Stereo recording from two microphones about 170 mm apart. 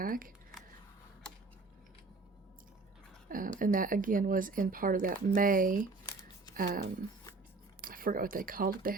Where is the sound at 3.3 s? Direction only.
55° right (ahead or behind).